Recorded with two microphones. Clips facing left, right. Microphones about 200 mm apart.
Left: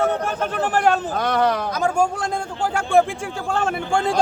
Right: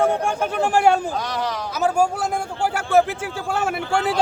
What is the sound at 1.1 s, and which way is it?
Speech, 60° left (ahead or behind).